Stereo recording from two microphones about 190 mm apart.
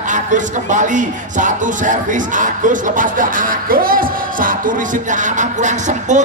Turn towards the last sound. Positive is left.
turn(degrees=-40)  # may be behind; listen again after turning